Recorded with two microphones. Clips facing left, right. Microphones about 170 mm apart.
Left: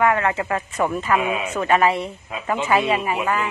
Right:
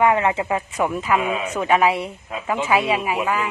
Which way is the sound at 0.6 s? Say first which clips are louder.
Even; 5° right (ahead or behind).